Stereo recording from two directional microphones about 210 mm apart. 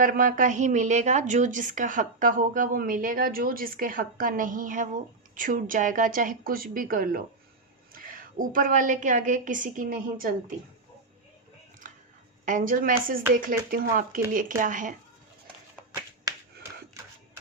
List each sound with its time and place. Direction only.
0.0 s a woman's voice: 40° right (ahead or behind)
12.5 s a woman's voice: 40° right (ahead or behind)